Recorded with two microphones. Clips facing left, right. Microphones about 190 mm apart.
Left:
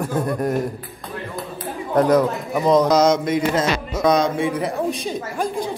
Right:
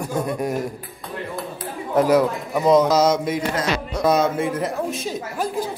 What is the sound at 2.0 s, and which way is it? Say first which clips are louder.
A man's voice: left 1 dB; 5° right (ahead or behind).